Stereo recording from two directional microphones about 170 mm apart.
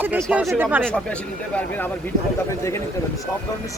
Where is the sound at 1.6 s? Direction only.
10° left (ahead or behind).